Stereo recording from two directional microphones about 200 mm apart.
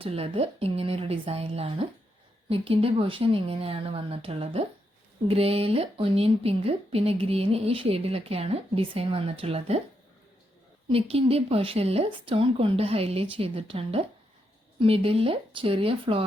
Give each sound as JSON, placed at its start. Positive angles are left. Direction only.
{"t": 0.0, "sound": "speech", "side_deg": -30}
{"t": 10.8, "sound": "speech", "side_deg": -30}